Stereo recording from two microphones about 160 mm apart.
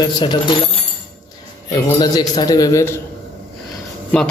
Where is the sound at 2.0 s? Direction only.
25° left (ahead or behind).